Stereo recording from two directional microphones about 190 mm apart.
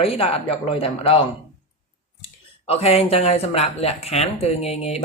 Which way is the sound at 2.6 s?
30° left (ahead or behind).